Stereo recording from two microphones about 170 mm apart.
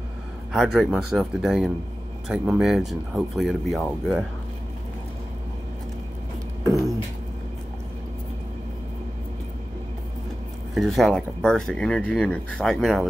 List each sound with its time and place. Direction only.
0.5 s speech: centre (ahead or behind)
6.6 s a sound: 20° right (ahead or behind)
10.7 s speech: centre (ahead or behind)